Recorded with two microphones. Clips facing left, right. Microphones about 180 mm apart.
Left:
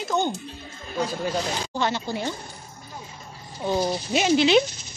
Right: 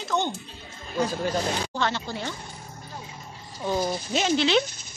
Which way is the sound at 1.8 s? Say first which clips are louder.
Left 2 dB; 15° left (ahead or behind).